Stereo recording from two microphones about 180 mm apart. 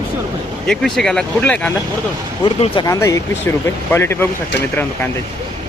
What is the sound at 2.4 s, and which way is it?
Speech, 25° left (ahead or behind).